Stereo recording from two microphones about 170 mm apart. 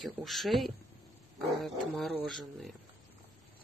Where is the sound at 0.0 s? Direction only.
Centre (ahead or behind).